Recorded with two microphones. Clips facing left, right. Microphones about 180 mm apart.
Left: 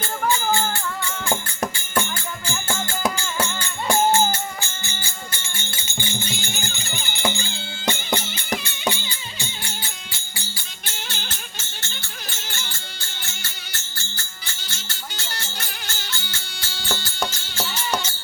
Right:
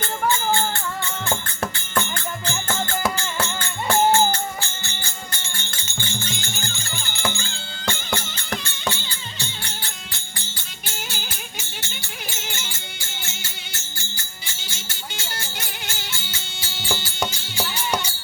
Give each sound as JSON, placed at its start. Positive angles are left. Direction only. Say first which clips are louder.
{"t": 1.3, "sound": "music", "louder": "left 3 dB", "side_deg": 10}
{"t": 5.7, "sound": "music", "louder": "left 2 dB", "side_deg": 10}
{"t": 10.8, "sound": "music", "louder": "right 1 dB", "side_deg": -5}
{"t": 14.8, "sound": "music", "louder": "right 1 dB", "side_deg": -20}